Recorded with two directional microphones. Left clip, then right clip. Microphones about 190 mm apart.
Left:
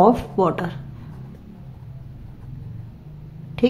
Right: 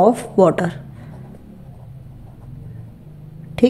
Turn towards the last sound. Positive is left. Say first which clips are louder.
# right 4 dB
turn(degrees=-25)  # may be behind; listen again after turning